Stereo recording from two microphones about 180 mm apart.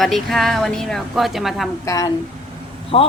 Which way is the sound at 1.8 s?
20° left (ahead or behind).